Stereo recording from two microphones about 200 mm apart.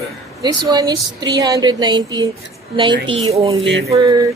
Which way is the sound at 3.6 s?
65° right (ahead or behind).